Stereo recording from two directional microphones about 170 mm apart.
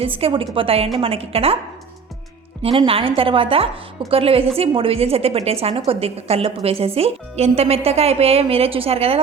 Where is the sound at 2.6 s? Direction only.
35° right (ahead or behind).